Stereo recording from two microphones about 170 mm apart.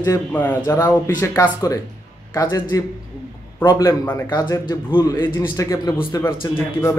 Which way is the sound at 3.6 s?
20° left (ahead or behind).